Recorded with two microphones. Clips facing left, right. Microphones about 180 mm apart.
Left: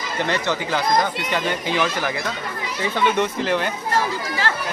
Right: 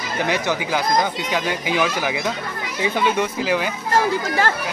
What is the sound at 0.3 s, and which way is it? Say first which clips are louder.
Speech: right 1 dB; 10° right (ahead or behind).